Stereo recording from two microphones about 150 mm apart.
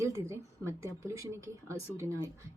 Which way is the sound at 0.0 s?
20° right (ahead or behind).